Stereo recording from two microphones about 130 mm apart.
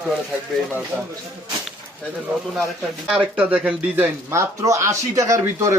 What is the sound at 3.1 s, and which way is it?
A man's voice, 10° right (ahead or behind).